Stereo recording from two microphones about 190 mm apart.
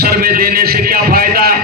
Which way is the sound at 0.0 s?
55° right (ahead or behind).